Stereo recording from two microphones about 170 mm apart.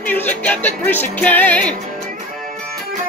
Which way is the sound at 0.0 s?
10° left (ahead or behind).